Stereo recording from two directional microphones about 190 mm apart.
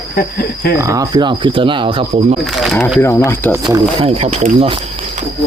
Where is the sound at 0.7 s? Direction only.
15° right (ahead or behind).